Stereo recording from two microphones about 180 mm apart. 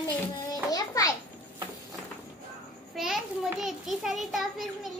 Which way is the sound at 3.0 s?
Centre (ahead or behind).